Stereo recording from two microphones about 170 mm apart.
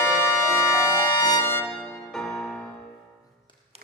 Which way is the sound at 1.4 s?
15° left (ahead or behind).